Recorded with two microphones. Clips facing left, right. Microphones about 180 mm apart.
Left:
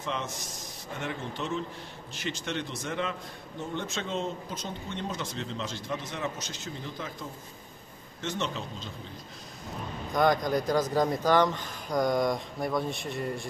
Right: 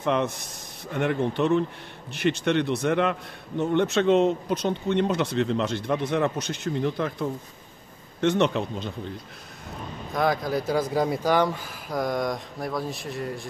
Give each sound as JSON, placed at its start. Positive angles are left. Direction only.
{"t": 0.0, "sound": "a man's voice", "side_deg": -60}
{"t": 10.1, "sound": "speech", "side_deg": -5}